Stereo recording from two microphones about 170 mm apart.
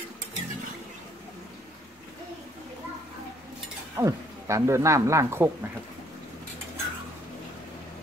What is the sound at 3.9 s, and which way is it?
Speech, 20° right (ahead or behind).